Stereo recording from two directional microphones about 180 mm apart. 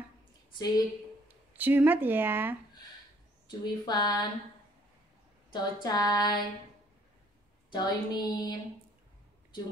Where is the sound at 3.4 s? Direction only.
25° left (ahead or behind).